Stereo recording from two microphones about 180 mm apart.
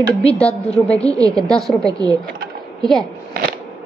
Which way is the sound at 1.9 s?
20° right (ahead or behind).